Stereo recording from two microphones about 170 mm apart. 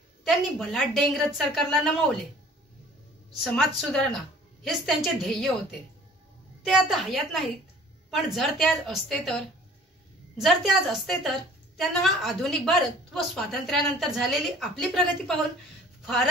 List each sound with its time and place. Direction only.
0.2 s a woman's voice: centre (ahead or behind)
3.4 s a woman's voice: centre (ahead or behind)